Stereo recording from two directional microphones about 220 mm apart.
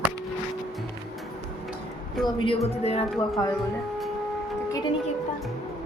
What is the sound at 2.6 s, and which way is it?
Speech, 30° left (ahead or behind).